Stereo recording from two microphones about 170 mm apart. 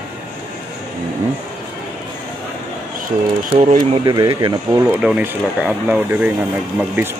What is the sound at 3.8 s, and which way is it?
Speech, 25° right (ahead or behind).